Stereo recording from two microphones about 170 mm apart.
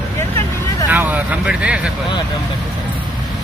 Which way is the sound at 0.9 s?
10° right (ahead or behind).